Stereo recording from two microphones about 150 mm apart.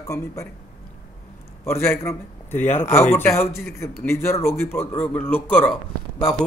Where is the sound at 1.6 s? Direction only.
15° left (ahead or behind).